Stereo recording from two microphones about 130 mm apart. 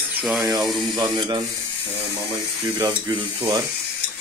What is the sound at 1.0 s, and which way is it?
Speech, 30° right (ahead or behind).